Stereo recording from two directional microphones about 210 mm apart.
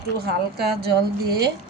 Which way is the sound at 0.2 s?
50° right (ahead or behind).